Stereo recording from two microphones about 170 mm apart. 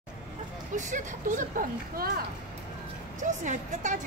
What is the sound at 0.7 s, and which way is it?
Speech, 45° right (ahead or behind).